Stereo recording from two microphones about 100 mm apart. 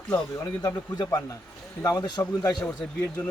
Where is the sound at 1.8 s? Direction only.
40° left (ahead or behind).